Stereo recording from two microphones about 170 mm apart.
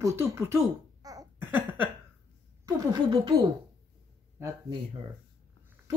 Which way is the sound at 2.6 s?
25° right (ahead or behind).